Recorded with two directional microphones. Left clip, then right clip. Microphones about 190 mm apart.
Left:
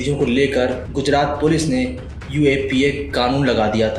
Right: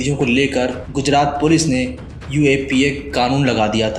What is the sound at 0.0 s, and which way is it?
A man's voice, 45° right (ahead or behind).